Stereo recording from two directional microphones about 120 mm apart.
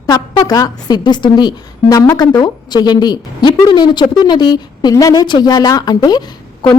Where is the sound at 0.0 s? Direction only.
35° left (ahead or behind).